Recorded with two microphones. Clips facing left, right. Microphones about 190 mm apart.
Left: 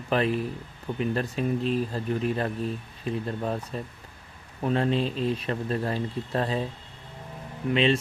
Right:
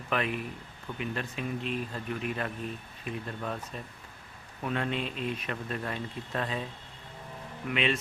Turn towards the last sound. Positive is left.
turn(degrees=30)  # may be behind; listen again after turning